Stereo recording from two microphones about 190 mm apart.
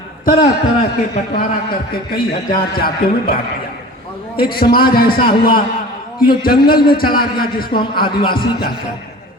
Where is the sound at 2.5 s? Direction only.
50° left (ahead or behind).